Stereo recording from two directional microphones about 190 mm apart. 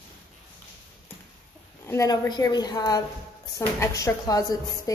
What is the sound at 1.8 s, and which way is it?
A woman's voice, 15° left (ahead or behind).